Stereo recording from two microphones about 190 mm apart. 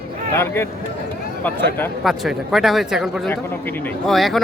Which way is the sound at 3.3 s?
10° left (ahead or behind).